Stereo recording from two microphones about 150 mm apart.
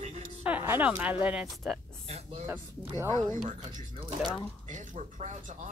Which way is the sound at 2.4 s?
15° right (ahead or behind).